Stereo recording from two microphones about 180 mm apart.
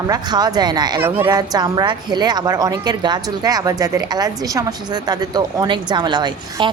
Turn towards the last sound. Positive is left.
turn(degrees=-25)  # may be behind; listen again after turning